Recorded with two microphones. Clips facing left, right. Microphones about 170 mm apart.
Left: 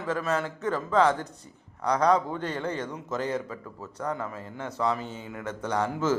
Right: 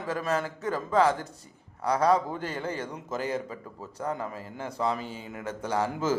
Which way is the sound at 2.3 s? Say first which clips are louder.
Left 2 dB; 30° right (ahead or behind).